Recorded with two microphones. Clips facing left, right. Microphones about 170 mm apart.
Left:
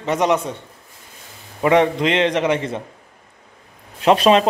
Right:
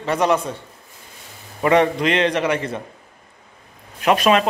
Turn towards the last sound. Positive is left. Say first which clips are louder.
# left 3 dB
turn(degrees=30)  # may be behind; listen again after turning